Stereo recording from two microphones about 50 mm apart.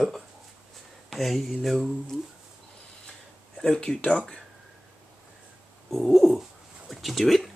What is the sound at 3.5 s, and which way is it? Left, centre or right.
Speech, centre.